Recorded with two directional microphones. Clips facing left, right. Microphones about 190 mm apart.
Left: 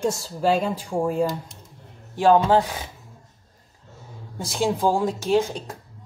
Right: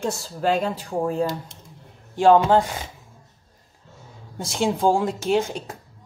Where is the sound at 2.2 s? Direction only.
5° left (ahead or behind).